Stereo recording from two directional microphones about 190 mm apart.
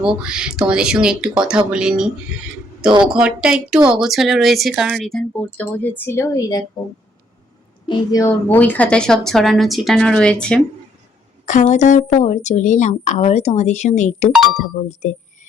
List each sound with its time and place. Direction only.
0.0 s a woman's voice: 5° right (ahead or behind); by 6.7 s 20° left (ahead or behind)
7.9 s a woman's voice: 15° left (ahead or behind)
11.6 s a woman's voice: 40° left (ahead or behind)